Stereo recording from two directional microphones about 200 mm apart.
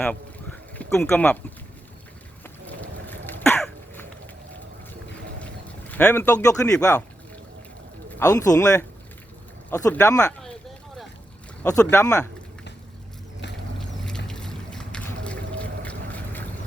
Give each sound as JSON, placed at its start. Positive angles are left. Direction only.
{"t": 0.8, "sound": "speech", "side_deg": 5}
{"t": 3.1, "sound": "throat clearing", "side_deg": 10}
{"t": 5.9, "sound": "speech", "side_deg": 10}
{"t": 8.2, "sound": "speech", "side_deg": 15}
{"t": 11.6, "sound": "speech", "side_deg": 15}
{"t": 13.7, "sound": "boat", "side_deg": 5}